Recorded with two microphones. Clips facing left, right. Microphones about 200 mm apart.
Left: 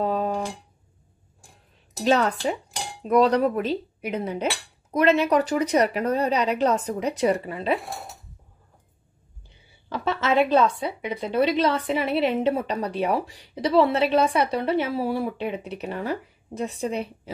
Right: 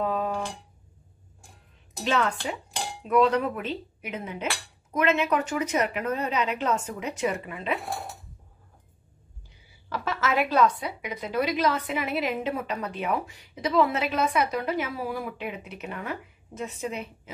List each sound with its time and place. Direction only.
0.0 s a sound: 35° left (ahead or behind)
2.0 s a woman's voice: 40° left (ahead or behind)
9.5 s a woman's voice: 25° left (ahead or behind)